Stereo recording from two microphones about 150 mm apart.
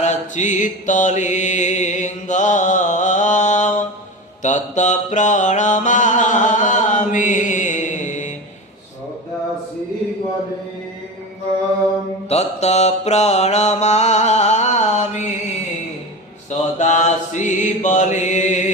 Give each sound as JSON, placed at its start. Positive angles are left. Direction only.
{"t": 0.0, "sound": "mantra", "side_deg": 55}
{"t": 12.3, "sound": "mantra", "side_deg": 45}
{"t": 16.5, "sound": "mantra", "side_deg": 55}